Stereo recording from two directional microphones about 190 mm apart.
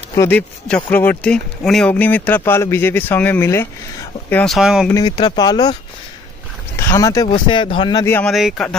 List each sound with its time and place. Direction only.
0.1 s speech: 10° left (ahead or behind)
4.9 s speech: 20° left (ahead or behind)
6.8 s speech: 15° left (ahead or behind)
8.3 s speech: centre (ahead or behind)